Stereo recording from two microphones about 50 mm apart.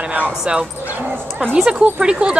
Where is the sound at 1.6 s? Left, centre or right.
Centre.